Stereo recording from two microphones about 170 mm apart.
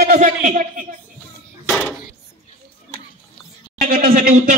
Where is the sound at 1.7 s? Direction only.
5° left (ahead or behind).